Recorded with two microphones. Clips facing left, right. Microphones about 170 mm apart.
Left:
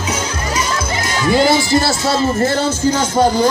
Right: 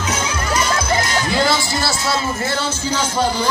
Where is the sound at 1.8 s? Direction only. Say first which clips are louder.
Left 5 dB; 45° left (ahead or behind).